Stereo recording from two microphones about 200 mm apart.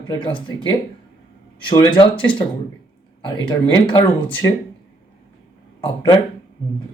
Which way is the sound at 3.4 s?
20° left (ahead or behind).